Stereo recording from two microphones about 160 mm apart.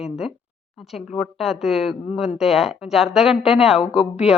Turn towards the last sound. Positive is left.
turn(degrees=-5)  # may be behind; listen again after turning